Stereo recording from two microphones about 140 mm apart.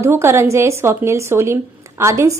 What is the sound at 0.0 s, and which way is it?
A woman's voice, 20° right (ahead or behind).